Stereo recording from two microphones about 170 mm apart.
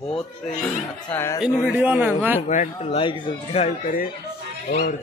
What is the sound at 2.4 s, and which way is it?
Speech, 45° left (ahead or behind).